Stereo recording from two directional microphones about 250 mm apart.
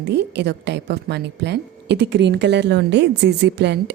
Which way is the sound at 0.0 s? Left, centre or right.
Right.